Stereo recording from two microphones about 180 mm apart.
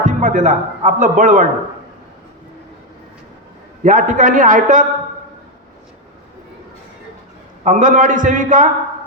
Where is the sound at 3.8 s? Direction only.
45° right (ahead or behind).